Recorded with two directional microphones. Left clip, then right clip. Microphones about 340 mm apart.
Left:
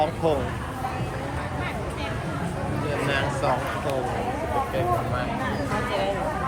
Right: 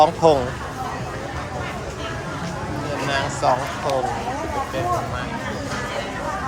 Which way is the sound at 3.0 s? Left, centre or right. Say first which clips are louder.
Right 4 dB; centre.